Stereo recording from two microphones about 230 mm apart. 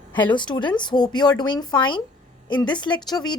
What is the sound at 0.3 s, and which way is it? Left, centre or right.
Speech, centre.